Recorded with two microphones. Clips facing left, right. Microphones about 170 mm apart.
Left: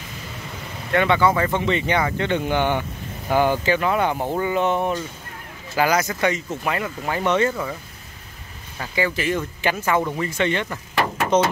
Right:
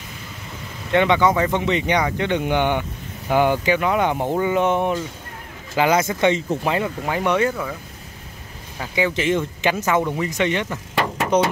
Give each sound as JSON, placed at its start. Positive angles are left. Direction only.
{"t": 0.9, "sound": "speech", "side_deg": -15}
{"t": 7.1, "sound": "speech", "side_deg": -10}
{"t": 8.7, "sound": "speech", "side_deg": -15}